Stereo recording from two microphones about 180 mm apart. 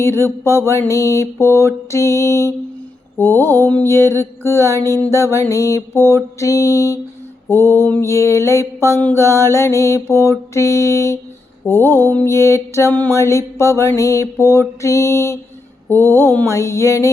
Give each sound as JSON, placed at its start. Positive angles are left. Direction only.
{"t": 0.0, "sound": "mantra", "side_deg": 15}